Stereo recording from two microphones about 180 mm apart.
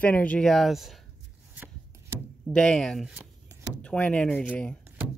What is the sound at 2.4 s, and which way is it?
Speech, 5° left (ahead or behind).